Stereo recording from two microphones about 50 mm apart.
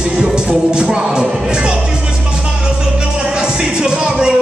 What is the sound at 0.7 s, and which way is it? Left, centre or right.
Speech, centre.